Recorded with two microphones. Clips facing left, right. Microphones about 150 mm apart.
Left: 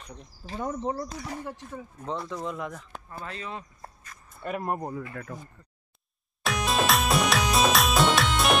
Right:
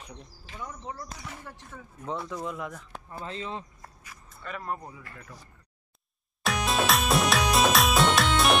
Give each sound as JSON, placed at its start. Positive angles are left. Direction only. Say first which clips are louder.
{"t": 0.7, "sound": "speech", "louder": "left 9 dB", "side_deg": 35}
{"t": 2.0, "sound": "speech", "louder": "left 1 dB", "side_deg": 0}
{"t": 3.1, "sound": "speech", "louder": "right 2 dB", "side_deg": -20}
{"t": 4.4, "sound": "speech", "louder": "left 5 dB", "side_deg": 50}
{"t": 6.4, "sound": "music", "louder": "left 1 dB", "side_deg": 0}